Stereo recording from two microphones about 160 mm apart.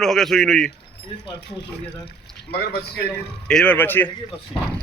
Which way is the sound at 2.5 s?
90° left.